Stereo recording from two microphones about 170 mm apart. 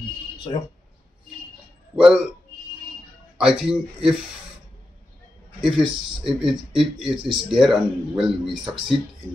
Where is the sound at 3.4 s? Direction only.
5° right (ahead or behind).